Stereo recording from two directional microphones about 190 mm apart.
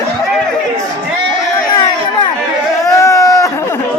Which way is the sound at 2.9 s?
15° left (ahead or behind).